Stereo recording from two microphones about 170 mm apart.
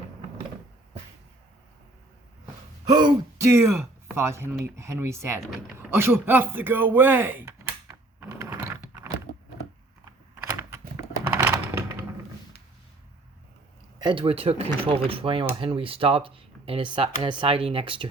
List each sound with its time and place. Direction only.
2.8 s speech: 20° right (ahead or behind)
5.4 s speech: centre (ahead or behind)
5.9 s speech: 15° right (ahead or behind)
8.4 s computer keyboard: 15° right (ahead or behind)
10.4 s typing: 15° right (ahead or behind)
14.0 s speech: 30° right (ahead or behind)